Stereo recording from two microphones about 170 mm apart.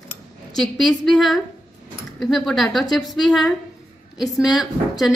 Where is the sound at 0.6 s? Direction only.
Centre (ahead or behind).